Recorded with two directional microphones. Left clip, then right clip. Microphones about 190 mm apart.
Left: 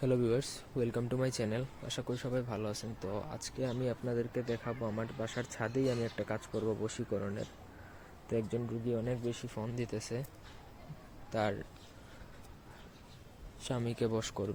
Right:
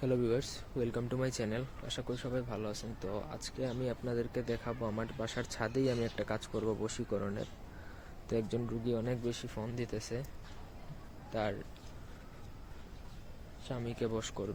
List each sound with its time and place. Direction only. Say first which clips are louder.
0.0 s speech: left 1 dB; 10° left (ahead or behind)
9.0 s speech: even; centre (ahead or behind)
11.3 s speech: left 2 dB; 15° left (ahead or behind)
13.7 s speech: left 3 dB; 25° left (ahead or behind)